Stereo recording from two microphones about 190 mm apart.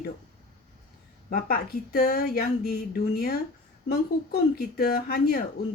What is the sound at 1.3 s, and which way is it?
Speech, 50° left (ahead or behind).